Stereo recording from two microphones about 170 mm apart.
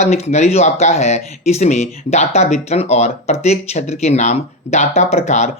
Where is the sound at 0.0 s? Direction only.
40° left (ahead or behind).